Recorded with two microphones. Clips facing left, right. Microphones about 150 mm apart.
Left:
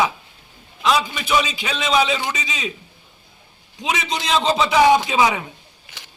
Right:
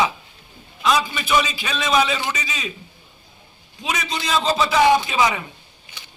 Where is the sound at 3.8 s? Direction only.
20° left (ahead or behind).